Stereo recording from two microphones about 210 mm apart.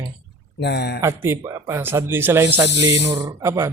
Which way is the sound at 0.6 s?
50° left (ahead or behind).